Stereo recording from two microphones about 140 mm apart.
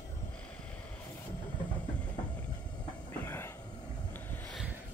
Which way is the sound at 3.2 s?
15° left (ahead or behind).